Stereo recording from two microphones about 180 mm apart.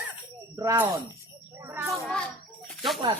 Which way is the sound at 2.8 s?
Centre (ahead or behind).